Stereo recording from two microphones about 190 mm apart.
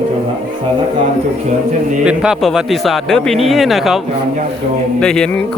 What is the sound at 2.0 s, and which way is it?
Speech, 5° right (ahead or behind).